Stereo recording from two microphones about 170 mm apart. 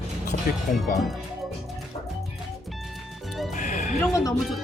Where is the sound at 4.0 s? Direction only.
Centre (ahead or behind).